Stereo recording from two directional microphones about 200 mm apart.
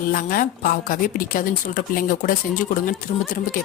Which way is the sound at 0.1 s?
45° left (ahead or behind).